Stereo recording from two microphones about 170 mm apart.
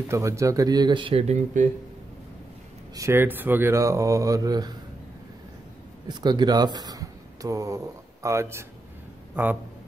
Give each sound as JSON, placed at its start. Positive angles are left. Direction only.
{"t": 0.1, "sound": "speech", "side_deg": -15}
{"t": 2.9, "sound": "speech", "side_deg": -15}
{"t": 6.0, "sound": "a man's voice", "side_deg": -25}